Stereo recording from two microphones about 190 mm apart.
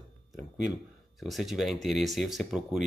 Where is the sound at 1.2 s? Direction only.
Centre (ahead or behind).